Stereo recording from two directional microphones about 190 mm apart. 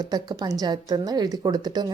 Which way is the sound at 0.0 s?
20° right (ahead or behind).